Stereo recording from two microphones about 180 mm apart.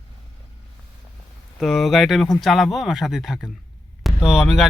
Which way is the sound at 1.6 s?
Centre (ahead or behind).